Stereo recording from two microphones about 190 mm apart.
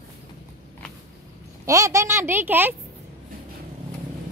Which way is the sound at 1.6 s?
15° right (ahead or behind).